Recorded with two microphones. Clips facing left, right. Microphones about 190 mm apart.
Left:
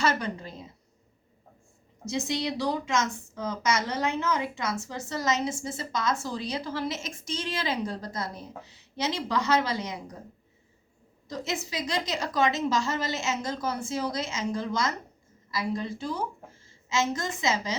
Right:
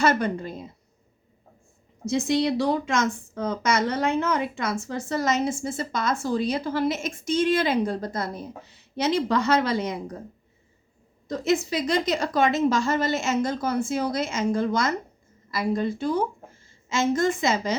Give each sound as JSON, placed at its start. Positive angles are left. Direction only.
{"t": 0.0, "sound": "speech", "side_deg": -55}
{"t": 2.0, "sound": "speech", "side_deg": -55}
{"t": 11.3, "sound": "a woman's voice", "side_deg": -55}